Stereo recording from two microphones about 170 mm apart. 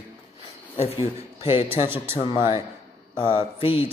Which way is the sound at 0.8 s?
35° left (ahead or behind).